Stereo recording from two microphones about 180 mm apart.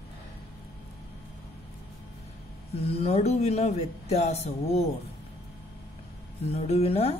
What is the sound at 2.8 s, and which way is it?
Speech, 35° left (ahead or behind).